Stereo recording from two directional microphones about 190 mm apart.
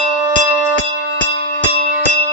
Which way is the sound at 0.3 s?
15° right (ahead or behind).